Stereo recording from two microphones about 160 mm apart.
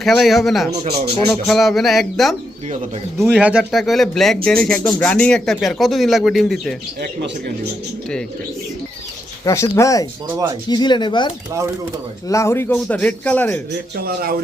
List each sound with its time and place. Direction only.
0.0 s speech: centre (ahead or behind)
7.0 s speech: 85° right
9.4 s speech: 20° left (ahead or behind)
12.3 s speech: 15° left (ahead or behind)
13.9 s a man's voice: 70° right (ahead or behind)